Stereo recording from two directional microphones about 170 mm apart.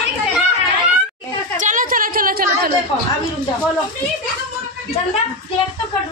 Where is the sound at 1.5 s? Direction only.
50° right (ahead or behind).